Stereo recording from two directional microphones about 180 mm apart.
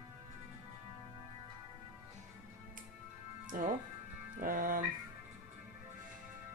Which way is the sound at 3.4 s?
50° right (ahead or behind).